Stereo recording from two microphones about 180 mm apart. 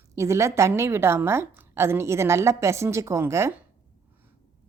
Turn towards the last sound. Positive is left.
turn(degrees=-15)  # may be behind; listen again after turning